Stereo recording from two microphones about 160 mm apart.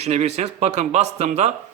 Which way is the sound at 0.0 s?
45° right (ahead or behind).